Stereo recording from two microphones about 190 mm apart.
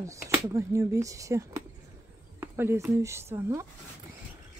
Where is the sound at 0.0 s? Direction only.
15° right (ahead or behind).